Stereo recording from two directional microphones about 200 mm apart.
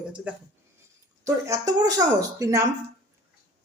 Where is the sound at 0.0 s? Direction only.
5° right (ahead or behind).